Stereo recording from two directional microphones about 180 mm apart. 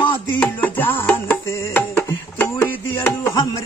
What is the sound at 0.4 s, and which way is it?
Music, 10° left (ahead or behind).